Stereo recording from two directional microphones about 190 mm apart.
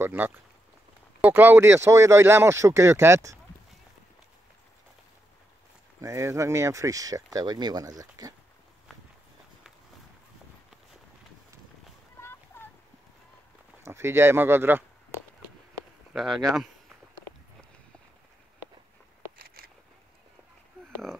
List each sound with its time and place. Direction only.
0.0 s speech: 10° right (ahead or behind)
5.9 s speech: 15° right (ahead or behind)
13.8 s speech: 15° right (ahead or behind)
16.1 s speech: centre (ahead or behind)
19.3 s a sound: 55° right (ahead or behind)